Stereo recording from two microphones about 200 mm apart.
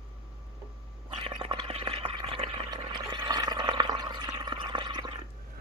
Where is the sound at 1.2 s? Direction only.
25° right (ahead or behind).